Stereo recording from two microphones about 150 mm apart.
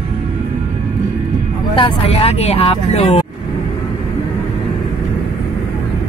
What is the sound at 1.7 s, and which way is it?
Speech, 35° left (ahead or behind).